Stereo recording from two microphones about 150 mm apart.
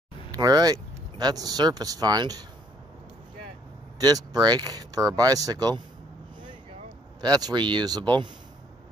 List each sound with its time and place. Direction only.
0.3 s speech: 25° right (ahead or behind)
4.0 s speech: 25° right (ahead or behind)
7.2 s speech: 25° right (ahead or behind)